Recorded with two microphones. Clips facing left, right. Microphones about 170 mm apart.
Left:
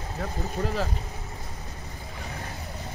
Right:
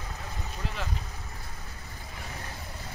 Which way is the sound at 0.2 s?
45° left (ahead or behind).